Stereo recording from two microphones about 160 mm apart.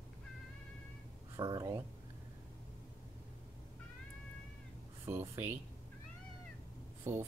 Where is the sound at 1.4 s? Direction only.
25° right (ahead or behind).